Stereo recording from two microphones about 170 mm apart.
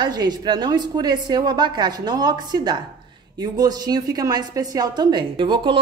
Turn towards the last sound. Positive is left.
turn(degrees=-25)  # may be behind; listen again after turning